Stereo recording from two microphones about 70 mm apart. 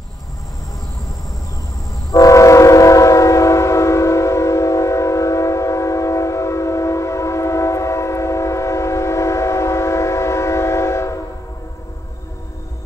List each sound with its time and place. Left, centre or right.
2.0 s train: left